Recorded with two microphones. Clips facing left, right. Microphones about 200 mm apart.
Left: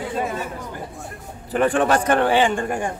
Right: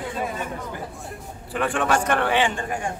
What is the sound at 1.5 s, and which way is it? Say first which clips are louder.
A man's voice: left 5 dB; 40° left (ahead or behind).